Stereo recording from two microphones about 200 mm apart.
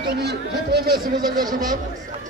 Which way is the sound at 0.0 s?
55° right (ahead or behind).